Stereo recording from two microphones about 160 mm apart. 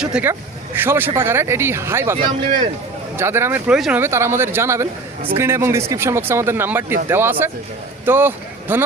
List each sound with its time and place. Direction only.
0.0 s speech: 5° right (ahead or behind)
3.2 s speech: 15° right (ahead or behind)
4.0 s speech: 15° right (ahead or behind)